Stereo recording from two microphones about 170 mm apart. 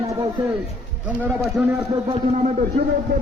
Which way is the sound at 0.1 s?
25° right (ahead or behind).